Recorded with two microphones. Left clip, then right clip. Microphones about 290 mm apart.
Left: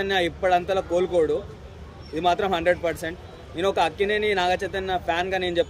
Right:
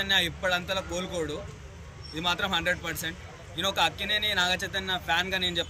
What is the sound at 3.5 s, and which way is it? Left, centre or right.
Speech, centre.